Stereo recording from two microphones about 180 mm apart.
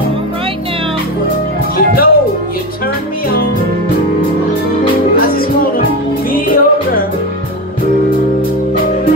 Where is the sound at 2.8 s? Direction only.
55° left (ahead or behind).